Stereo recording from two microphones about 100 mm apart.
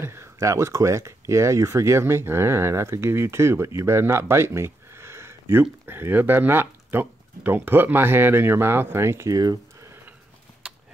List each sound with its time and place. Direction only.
0.0 s speech: 25° right (ahead or behind)
9.3 s speech: 40° right (ahead or behind)